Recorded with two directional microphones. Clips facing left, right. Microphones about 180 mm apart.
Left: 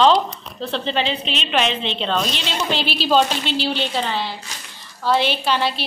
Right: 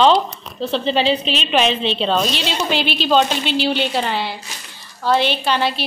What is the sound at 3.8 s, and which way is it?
Female singing, 10° right (ahead or behind).